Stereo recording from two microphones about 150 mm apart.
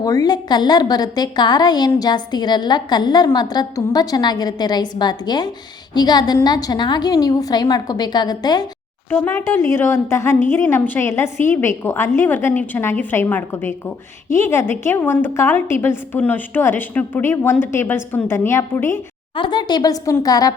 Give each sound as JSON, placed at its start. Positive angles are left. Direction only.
{"t": 0.0, "sound": "a woman's voice", "side_deg": 25}
{"t": 9.0, "sound": "a woman's voice", "side_deg": 10}
{"t": 19.4, "sound": "a woman's voice", "side_deg": 30}